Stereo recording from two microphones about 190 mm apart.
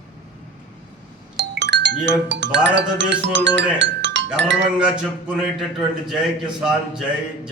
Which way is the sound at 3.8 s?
70° right (ahead or behind).